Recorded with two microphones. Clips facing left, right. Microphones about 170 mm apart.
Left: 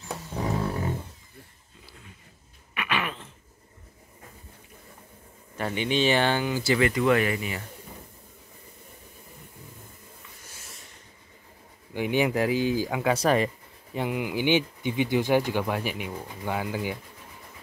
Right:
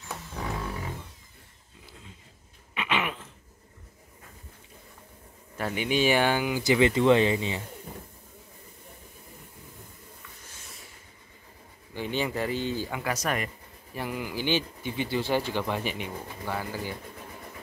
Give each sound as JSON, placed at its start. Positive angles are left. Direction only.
{"t": 0.1, "sound": "a sound", "side_deg": 20}
{"t": 2.7, "sound": "a sound", "side_deg": -20}
{"t": 5.6, "sound": "speech", "side_deg": -5}
{"t": 11.9, "sound": "speech", "side_deg": 15}
{"t": 13.1, "sound": "speech", "side_deg": 30}
{"t": 13.9, "sound": "speech", "side_deg": 20}